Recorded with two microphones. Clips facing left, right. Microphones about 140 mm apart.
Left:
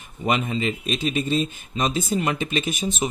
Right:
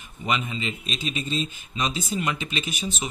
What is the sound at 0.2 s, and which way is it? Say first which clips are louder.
A man's voice: left 5 dB; 50° left (ahead or behind).